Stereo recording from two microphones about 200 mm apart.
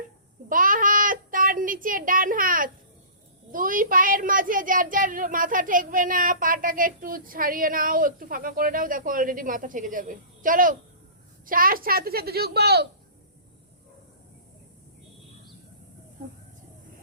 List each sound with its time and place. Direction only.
0.4 s child singing: 45° right (ahead or behind)
3.5 s a woman's voice: 45° right (ahead or behind)